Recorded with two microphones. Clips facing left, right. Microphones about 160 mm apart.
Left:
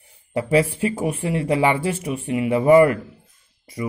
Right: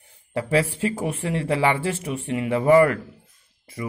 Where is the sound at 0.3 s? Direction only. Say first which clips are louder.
Left 3 dB; 15° left (ahead or behind).